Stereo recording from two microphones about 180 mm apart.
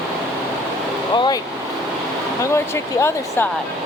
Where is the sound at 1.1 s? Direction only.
25° left (ahead or behind).